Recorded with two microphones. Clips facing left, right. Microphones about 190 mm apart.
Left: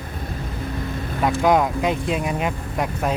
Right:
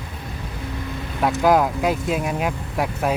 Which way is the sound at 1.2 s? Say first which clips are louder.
Right 1 dB; centre (ahead or behind).